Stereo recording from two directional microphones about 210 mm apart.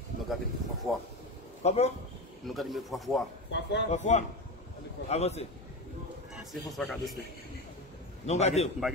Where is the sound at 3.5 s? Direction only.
55° left (ahead or behind).